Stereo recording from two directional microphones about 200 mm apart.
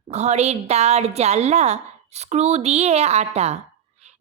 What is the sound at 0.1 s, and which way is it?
A woman's voice, 35° right (ahead or behind).